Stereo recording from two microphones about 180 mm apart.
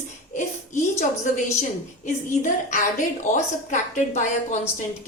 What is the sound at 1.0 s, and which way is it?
A woman's voice, 45° left (ahead or behind).